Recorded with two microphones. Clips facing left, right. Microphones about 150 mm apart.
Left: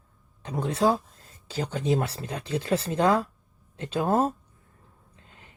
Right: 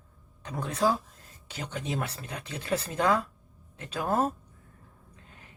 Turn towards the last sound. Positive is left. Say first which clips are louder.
# right 1 dB
turn(degrees=30)  # may be behind; listen again after turning